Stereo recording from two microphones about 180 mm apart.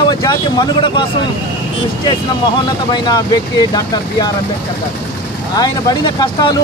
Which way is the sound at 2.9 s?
20° left (ahead or behind).